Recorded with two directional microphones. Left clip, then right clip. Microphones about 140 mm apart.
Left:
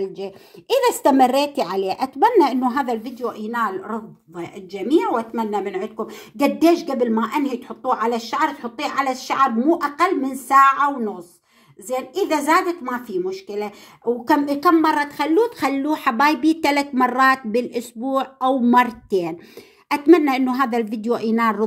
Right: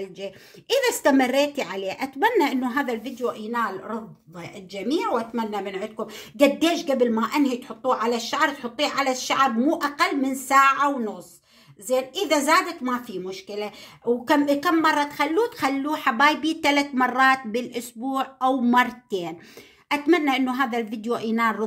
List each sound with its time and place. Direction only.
0.0 s a woman's voice: 15° left (ahead or behind)
3.3 s a woman's voice: 40° left (ahead or behind); by 21.6 s 25° left (ahead or behind)